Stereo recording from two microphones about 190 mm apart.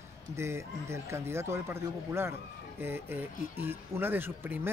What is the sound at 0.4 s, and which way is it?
Speech, 15° right (ahead or behind).